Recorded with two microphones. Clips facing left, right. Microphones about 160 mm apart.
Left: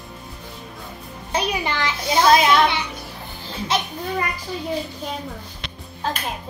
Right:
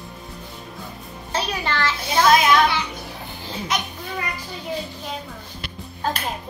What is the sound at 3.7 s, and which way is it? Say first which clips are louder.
Music: left 5 dB; 30° left (ahead or behind).